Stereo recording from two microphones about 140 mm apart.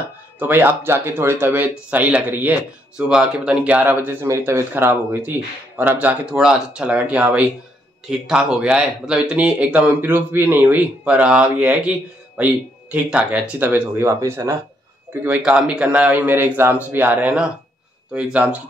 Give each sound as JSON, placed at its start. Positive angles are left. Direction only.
{"t": 0.4, "sound": "speech", "side_deg": -15}
{"t": 15.2, "sound": "speech", "side_deg": -10}